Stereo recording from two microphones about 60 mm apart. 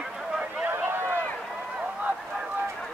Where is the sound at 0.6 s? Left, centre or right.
Right.